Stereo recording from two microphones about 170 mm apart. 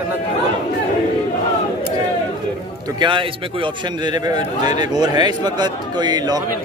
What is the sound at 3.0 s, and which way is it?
Speech, 30° right (ahead or behind).